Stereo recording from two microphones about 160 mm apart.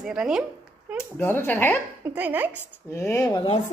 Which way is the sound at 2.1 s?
10° right (ahead or behind).